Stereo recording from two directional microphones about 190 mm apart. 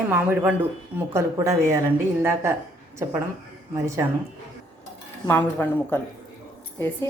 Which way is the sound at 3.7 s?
15° right (ahead or behind).